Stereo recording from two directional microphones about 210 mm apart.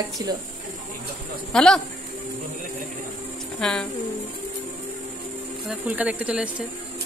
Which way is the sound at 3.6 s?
5° left (ahead or behind).